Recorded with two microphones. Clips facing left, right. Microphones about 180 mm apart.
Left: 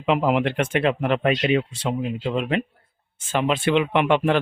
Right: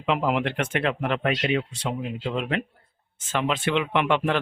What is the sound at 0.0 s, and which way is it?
Speech, 15° left (ahead or behind).